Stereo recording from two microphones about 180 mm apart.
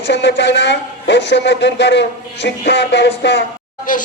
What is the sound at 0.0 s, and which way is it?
A man's voice, 75° left (ahead or behind).